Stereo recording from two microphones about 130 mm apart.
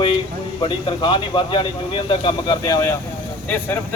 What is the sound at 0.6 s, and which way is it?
Speech, 35° left (ahead or behind).